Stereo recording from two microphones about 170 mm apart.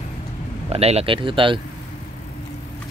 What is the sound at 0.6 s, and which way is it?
Speech, 35° right (ahead or behind).